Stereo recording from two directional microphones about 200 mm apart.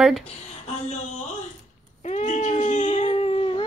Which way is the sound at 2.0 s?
35° left (ahead or behind).